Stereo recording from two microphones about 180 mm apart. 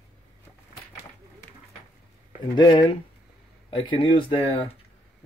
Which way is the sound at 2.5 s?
25° left (ahead or behind).